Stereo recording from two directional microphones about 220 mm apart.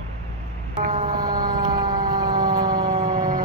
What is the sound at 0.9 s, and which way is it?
Emergency vehicle, 20° right (ahead or behind).